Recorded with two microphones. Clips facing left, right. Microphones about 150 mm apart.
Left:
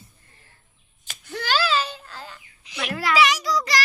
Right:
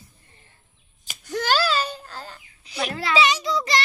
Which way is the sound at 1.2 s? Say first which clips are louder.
Right 2 dB; 45° right (ahead or behind).